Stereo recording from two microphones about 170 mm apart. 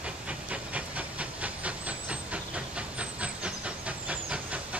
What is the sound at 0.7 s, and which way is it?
Hiss, 10° right (ahead or behind).